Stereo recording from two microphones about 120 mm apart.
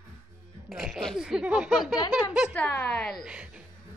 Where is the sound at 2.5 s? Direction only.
15° left (ahead or behind).